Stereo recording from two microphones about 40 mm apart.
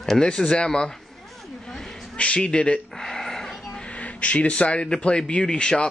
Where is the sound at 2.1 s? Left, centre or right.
Left.